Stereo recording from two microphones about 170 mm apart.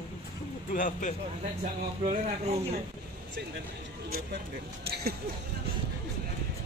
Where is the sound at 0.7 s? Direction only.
50° left (ahead or behind).